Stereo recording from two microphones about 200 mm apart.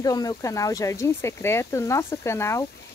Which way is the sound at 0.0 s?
20° left (ahead or behind).